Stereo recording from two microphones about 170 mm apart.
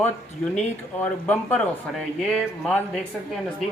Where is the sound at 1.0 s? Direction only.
10° left (ahead or behind).